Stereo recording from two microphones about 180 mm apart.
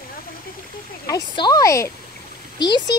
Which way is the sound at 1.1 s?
20° left (ahead or behind).